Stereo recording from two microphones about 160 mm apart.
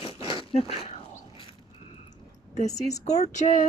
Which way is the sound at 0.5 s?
40° left (ahead or behind).